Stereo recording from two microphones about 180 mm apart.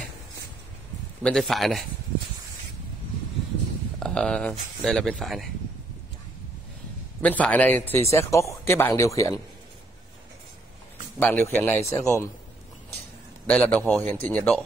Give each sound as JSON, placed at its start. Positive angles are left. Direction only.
{"t": 1.2, "sound": "speech", "side_deg": 0}
{"t": 4.0, "sound": "speech", "side_deg": 5}
{"t": 7.2, "sound": "a man's voice", "side_deg": 10}
{"t": 11.1, "sound": "a man's voice", "side_deg": 10}
{"t": 13.5, "sound": "a man's voice", "side_deg": 5}